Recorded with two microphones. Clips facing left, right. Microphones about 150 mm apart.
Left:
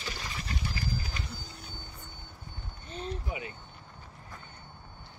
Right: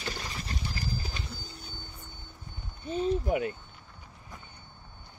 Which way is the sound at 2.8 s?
5° right (ahead or behind).